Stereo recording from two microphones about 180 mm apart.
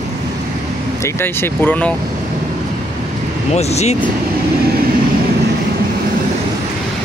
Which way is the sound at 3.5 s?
35° left (ahead or behind).